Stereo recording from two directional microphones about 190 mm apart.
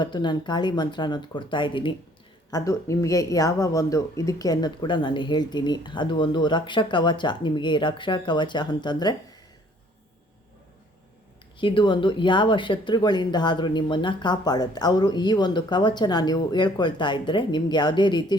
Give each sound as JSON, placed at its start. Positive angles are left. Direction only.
{"t": 0.0, "sound": "speech", "side_deg": 25}
{"t": 11.6, "sound": "speech", "side_deg": 25}